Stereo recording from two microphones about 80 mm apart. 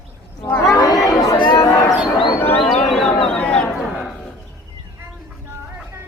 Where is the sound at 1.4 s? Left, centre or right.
Left.